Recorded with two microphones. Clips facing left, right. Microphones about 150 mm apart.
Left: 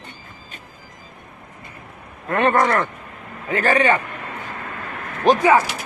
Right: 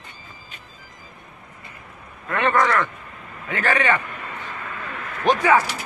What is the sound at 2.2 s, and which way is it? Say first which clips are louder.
Speech: left 3 dB; 35° left (ahead or behind).